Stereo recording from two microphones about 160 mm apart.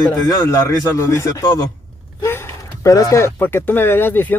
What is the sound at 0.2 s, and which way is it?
A man's voice, 20° left (ahead or behind).